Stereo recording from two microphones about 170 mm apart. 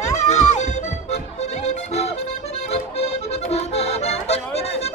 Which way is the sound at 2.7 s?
35° left (ahead or behind).